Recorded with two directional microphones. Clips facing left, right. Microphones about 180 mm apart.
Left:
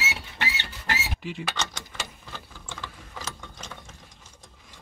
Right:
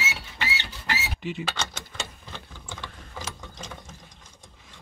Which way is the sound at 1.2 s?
Centre (ahead or behind).